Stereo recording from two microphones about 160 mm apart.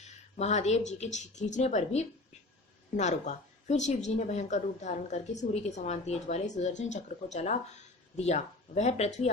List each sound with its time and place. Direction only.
0.0 s a woman's voice: 45° left (ahead or behind)